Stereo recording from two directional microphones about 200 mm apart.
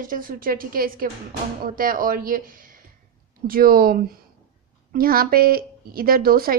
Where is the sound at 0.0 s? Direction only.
45° right (ahead or behind).